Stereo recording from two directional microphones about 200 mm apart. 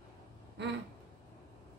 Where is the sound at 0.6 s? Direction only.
60° right (ahead or behind).